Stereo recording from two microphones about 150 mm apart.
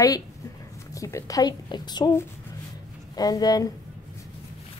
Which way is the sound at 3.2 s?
25° left (ahead or behind).